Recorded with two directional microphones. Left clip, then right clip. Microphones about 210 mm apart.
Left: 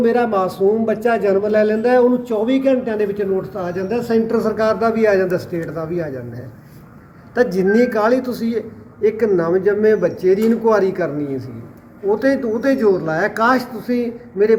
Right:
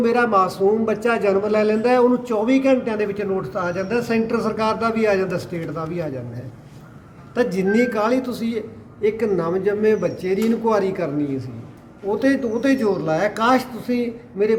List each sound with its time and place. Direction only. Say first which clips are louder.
0.0 s a man's voice: left 1 dB; 5° right (ahead or behind)
7.3 s a man's voice: left 4 dB; 5° right (ahead or behind)
10.9 s a man's voice: left 2 dB; 20° right (ahead or behind)
12.8 s speech: left 3 dB; 5° right (ahead or behind)
13.6 s a man's voice: left 3 dB; 25° right (ahead or behind)
14.0 s a man's voice: left 5 dB; centre (ahead or behind)